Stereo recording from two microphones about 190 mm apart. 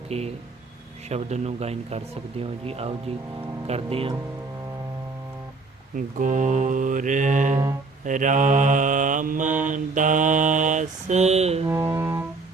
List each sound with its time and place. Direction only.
0.1 s mantra: 35° right (ahead or behind)
6.0 s mantra: 45° right (ahead or behind)
11.7 s music: 15° right (ahead or behind)